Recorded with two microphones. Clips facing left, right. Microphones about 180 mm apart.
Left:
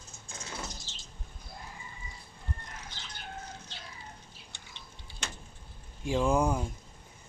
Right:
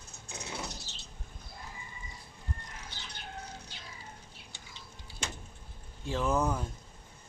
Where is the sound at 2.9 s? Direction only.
65° right (ahead or behind).